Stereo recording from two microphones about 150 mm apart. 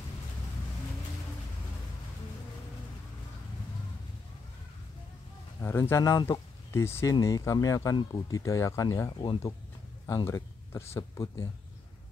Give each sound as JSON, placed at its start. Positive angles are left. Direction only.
{"t": 5.6, "sound": "speech", "side_deg": 15}